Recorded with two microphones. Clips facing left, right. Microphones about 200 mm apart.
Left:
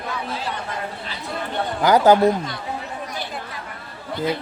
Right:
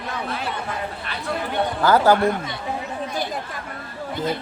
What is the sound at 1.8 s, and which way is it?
Speech, 15° left (ahead or behind).